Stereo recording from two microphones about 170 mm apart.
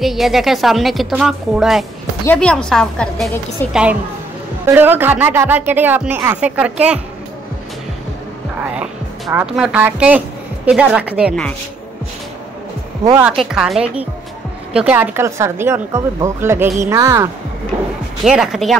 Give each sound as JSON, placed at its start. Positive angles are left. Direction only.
{"t": 0.0, "sound": "a woman's voice", "side_deg": 0}
{"t": 3.7, "sound": "speech", "side_deg": -5}
{"t": 9.3, "sound": "speech", "side_deg": -10}
{"t": 13.2, "sound": "a woman's voice", "side_deg": 0}
{"t": 18.2, "sound": "a woman's voice", "side_deg": -5}